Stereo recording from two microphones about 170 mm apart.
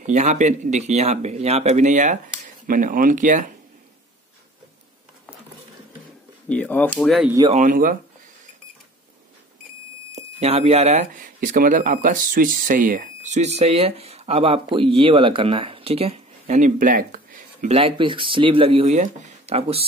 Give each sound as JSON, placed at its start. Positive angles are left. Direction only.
{"t": 0.0, "sound": "speech", "side_deg": -45}
{"t": 6.5, "sound": "speech", "side_deg": 10}
{"t": 7.5, "sound": "speech", "side_deg": -50}
{"t": 10.1, "sound": "speech", "side_deg": -40}
{"t": 17.6, "sound": "speech", "side_deg": -35}